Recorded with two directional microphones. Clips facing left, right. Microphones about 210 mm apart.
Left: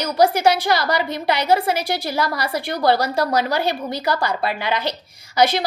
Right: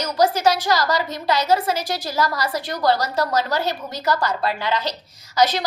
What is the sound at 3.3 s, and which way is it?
A woman's voice, 15° left (ahead or behind).